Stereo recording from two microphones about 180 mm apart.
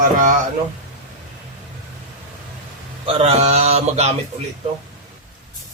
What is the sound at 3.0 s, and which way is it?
Speech, 35° right (ahead or behind).